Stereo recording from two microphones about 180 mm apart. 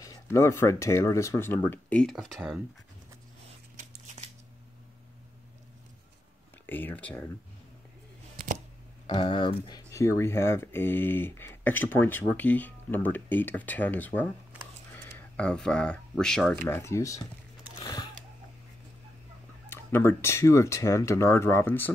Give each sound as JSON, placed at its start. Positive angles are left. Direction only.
{"t": 0.0, "sound": "speech", "side_deg": 15}
{"t": 3.7, "sound": "a sound", "side_deg": -40}
{"t": 6.6, "sound": "speech", "side_deg": 10}
{"t": 9.0, "sound": "speech", "side_deg": 30}
{"t": 16.6, "sound": "speech", "side_deg": 15}
{"t": 17.8, "sound": "a sound", "side_deg": 20}
{"t": 19.7, "sound": "speech", "side_deg": 10}